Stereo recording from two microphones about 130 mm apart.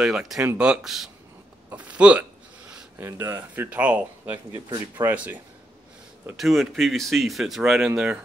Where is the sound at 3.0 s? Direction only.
20° right (ahead or behind).